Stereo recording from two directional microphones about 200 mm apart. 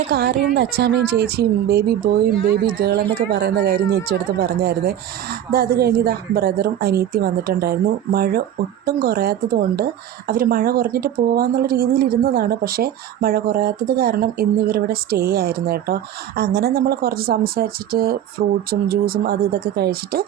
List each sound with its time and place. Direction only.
0.1 s speech: 55° right (ahead or behind)
3.4 s speech: 50° right (ahead or behind)